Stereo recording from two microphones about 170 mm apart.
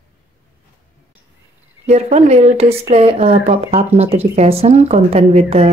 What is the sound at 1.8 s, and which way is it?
Speech, 40° right (ahead or behind).